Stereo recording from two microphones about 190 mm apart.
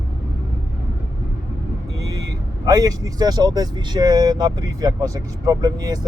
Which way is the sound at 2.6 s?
20° right (ahead or behind).